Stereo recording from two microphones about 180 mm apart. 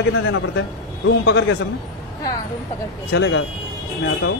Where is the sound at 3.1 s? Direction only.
90° left.